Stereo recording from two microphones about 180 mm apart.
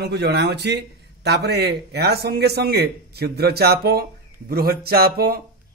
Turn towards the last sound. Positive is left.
turn(degrees=-55)  # may be behind; listen again after turning